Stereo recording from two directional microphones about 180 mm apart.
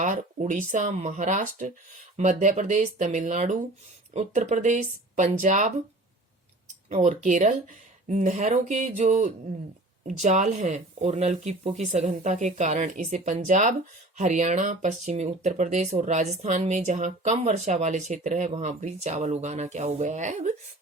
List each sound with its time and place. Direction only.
0.0 s speech: 45° right (ahead or behind)
6.9 s speech: 40° right (ahead or behind)